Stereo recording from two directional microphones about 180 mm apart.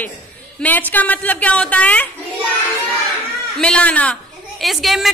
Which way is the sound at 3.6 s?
5° left (ahead or behind).